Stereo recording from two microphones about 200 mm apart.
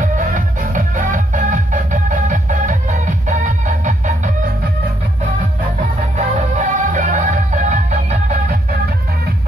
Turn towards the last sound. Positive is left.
turn(degrees=-40)  # may be behind; listen again after turning